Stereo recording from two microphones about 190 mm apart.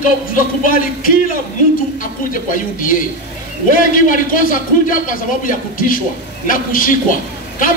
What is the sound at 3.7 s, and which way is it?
A man's voice, 45° left (ahead or behind).